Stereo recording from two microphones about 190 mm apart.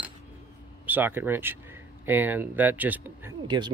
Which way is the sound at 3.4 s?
25° right (ahead or behind).